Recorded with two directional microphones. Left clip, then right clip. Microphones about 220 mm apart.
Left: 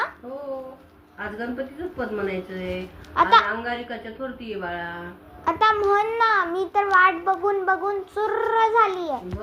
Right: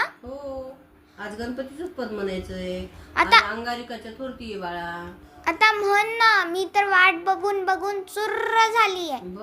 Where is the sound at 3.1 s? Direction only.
45° right (ahead or behind).